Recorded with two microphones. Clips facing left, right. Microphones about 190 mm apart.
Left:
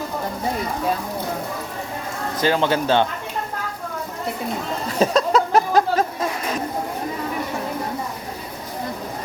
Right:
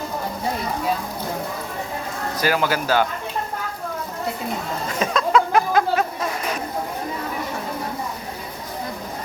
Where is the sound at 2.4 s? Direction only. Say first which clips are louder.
Left 2 dB; 25° left (ahead or behind).